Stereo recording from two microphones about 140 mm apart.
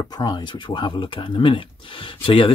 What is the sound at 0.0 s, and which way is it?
Speech, 30° left (ahead or behind).